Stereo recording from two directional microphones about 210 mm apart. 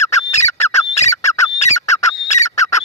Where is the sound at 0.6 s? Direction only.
30° left (ahead or behind).